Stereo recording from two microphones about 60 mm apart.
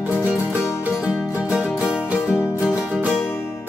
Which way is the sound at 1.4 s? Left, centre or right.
Centre.